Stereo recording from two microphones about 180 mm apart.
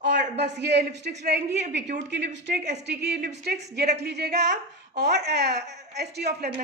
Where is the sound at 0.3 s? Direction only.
70° right (ahead or behind).